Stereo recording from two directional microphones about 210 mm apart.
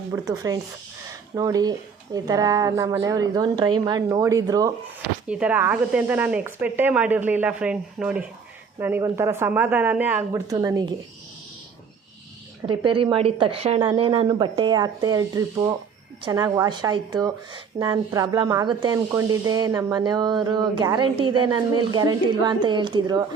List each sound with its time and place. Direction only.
0.1 s speech: 15° right (ahead or behind)
5.3 s speech: 5° right (ahead or behind)
12.6 s speech: 25° right (ahead or behind)